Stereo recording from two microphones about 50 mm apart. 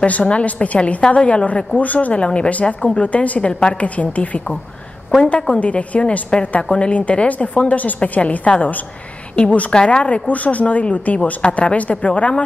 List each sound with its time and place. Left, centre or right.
0.0 s a woman's voice: left